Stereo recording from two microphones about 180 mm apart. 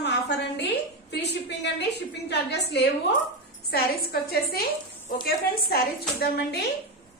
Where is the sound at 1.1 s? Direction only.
65° left (ahead or behind).